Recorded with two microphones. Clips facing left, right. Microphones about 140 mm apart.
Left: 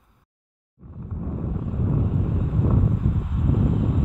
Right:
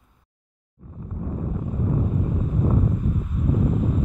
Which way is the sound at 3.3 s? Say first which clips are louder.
Even; 90° left.